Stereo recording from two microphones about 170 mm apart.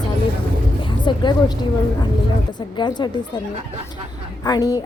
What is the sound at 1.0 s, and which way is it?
Speech, 25° left (ahead or behind).